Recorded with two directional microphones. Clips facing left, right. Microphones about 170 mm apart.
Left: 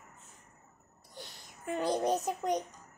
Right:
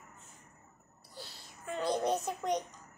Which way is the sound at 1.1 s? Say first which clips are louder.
Even; 20° left (ahead or behind).